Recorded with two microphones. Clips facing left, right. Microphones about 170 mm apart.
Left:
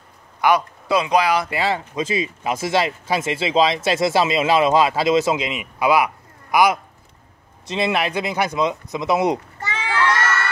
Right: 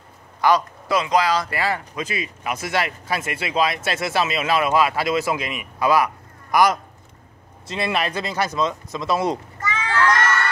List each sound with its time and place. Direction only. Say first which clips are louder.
0.6 s speech: left 2 dB; 15° left (ahead or behind)
7.6 s speech: left 3 dB; 20° left (ahead or behind)
9.6 s children playing: right 2 dB; 30° left (ahead or behind)
9.9 s crowd: right 1 dB; 10° left (ahead or behind)